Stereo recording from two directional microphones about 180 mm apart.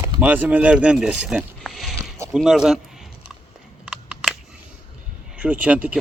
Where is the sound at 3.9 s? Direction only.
5° right (ahead or behind).